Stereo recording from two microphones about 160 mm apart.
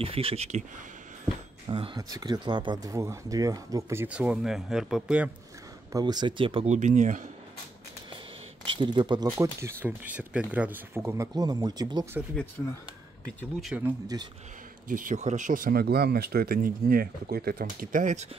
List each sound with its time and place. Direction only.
0.0 s speech: 35° right (ahead or behind)
1.7 s speech: 30° right (ahead or behind); by 5.3 s 5° right (ahead or behind)
5.9 s speech: 25° right (ahead or behind)
6.7 s speech: 50° right (ahead or behind)
8.7 s speech: 30° right (ahead or behind)
13.6 s speech: centre (ahead or behind)
14.1 s speech: 25° right (ahead or behind)
14.9 s speech: 55° right (ahead or behind)